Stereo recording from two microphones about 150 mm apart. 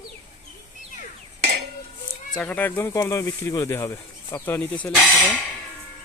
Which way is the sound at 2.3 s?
10° left (ahead or behind).